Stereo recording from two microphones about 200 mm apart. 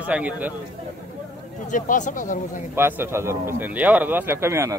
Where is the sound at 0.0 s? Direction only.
5° right (ahead or behind).